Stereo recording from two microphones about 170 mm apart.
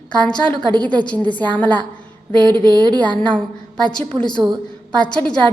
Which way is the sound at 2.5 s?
25° right (ahead or behind).